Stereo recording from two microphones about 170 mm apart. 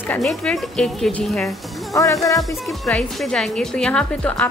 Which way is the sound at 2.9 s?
5° left (ahead or behind).